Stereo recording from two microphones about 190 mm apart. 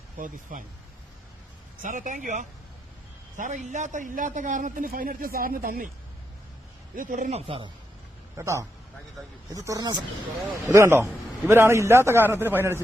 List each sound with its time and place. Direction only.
0.5 s a man's voice: 45° right (ahead or behind)
1.8 s a man's voice: 40° right (ahead or behind)
6.9 s speech: 45° right (ahead or behind)
8.4 s a man's voice: 15° right (ahead or behind)